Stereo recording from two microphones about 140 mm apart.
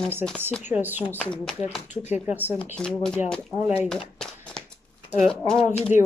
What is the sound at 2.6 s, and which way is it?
Speech, 5° left (ahead or behind).